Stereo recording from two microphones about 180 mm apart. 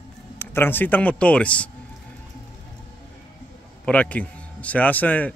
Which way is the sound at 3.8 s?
10° left (ahead or behind).